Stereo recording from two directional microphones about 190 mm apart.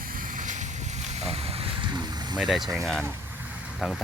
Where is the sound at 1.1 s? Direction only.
35° right (ahead or behind).